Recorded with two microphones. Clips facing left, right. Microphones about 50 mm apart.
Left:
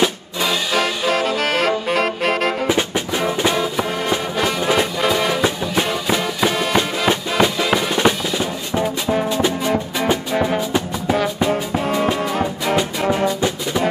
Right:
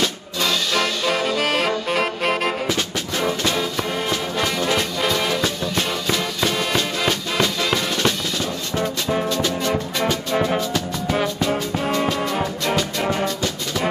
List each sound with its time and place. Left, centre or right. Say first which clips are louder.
0.0 s music: left 3 dB; centre
2.0 s saxophone: left 2 dB; centre
2.6 s music: left 5 dB; centre
11.8 s music: left 1 dB; centre